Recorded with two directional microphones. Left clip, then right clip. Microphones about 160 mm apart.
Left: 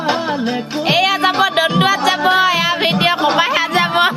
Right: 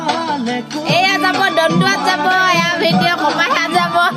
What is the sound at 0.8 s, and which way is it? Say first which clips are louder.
Music: even; centre (ahead or behind).